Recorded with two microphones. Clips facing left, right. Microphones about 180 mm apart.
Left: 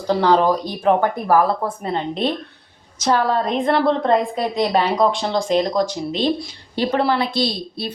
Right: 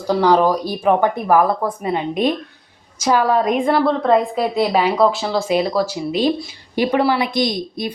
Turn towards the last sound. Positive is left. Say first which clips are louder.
# right 3 dB
turn(degrees=-15)  # may be behind; listen again after turning